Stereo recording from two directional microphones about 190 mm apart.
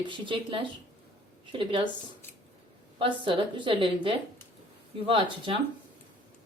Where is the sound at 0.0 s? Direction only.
25° right (ahead or behind).